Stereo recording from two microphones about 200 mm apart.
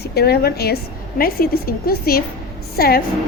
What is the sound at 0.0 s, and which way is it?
A woman's voice, 55° left (ahead or behind).